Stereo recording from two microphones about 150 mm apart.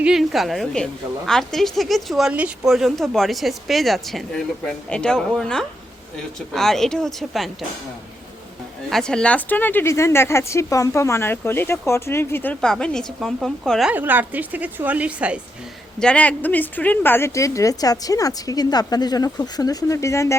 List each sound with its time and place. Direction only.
0.0 s speech: 5° right (ahead or behind)
8.9 s speech: 5° left (ahead or behind)
13.9 s a woman's voice: 10° right (ahead or behind)
16.0 s a woman's voice: 5° left (ahead or behind)